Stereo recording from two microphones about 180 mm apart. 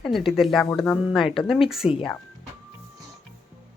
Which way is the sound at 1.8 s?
35° left (ahead or behind).